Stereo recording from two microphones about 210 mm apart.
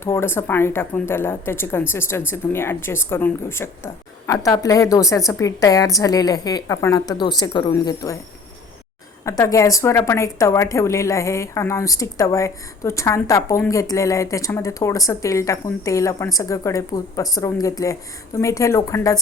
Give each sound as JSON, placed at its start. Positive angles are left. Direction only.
{"t": 0.0, "sound": "a woman's voice", "side_deg": 10}
{"t": 9.2, "sound": "a woman's voice", "side_deg": 15}